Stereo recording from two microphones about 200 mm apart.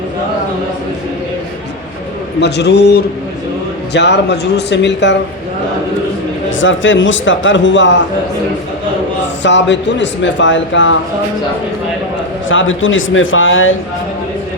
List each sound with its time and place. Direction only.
2.4 s speech: 55° left (ahead or behind)
6.6 s speech: 70° left (ahead or behind)
9.4 s speech: 65° left (ahead or behind)
12.5 s speech: 75° left (ahead or behind)